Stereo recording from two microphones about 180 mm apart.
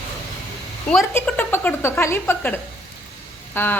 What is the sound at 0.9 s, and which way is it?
Speech, 5° left (ahead or behind).